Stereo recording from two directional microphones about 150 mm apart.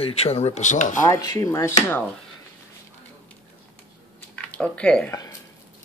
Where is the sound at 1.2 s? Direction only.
20° left (ahead or behind).